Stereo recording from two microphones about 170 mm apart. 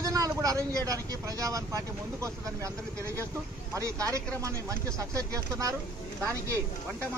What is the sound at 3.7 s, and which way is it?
Speech, 20° right (ahead or behind).